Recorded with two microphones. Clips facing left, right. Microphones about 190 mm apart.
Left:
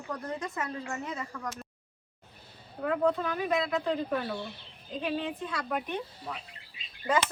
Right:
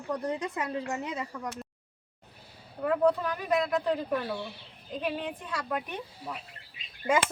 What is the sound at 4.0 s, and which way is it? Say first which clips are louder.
Speech: even; 10° right (ahead or behind).